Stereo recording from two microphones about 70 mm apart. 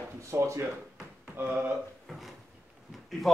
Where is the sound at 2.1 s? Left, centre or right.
Centre.